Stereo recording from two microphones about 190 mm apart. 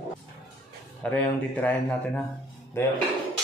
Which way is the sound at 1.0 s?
10° left (ahead or behind).